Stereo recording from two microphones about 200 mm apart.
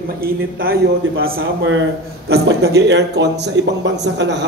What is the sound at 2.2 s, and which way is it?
Speech, 55° right (ahead or behind).